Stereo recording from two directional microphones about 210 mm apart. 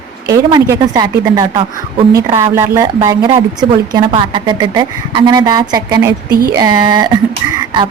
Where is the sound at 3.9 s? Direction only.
20° right (ahead or behind).